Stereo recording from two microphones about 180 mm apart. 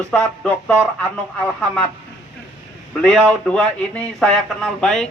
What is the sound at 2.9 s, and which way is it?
A man's voice, 5° left (ahead or behind).